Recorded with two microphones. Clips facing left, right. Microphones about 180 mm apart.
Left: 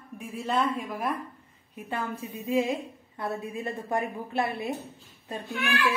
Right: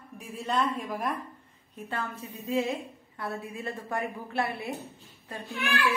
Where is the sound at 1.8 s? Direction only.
10° left (ahead or behind).